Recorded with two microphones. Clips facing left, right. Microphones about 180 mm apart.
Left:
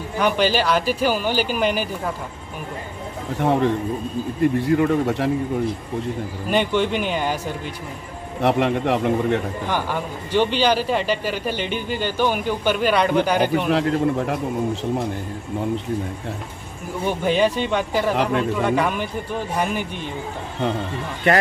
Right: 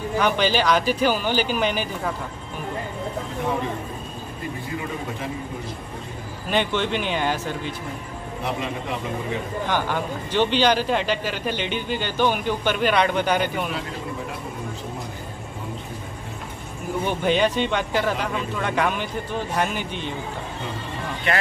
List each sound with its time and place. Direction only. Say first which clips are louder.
0.2 s speech: left 2 dB; 5° left (ahead or behind)
3.3 s a man's voice: left 9 dB; 75° left (ahead or behind)
6.5 s speech: left 3 dB; 5° left (ahead or behind)
8.4 s a man's voice: left 10 dB; 70° left (ahead or behind)
9.7 s speech: right 1 dB; 10° left (ahead or behind)
13.7 s a man's voice: left 11 dB; 70° left (ahead or behind)
17.0 s speech: left 2 dB; 5° left (ahead or behind)